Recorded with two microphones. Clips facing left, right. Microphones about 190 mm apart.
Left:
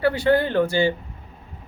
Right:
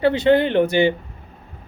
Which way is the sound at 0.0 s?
20° right (ahead or behind).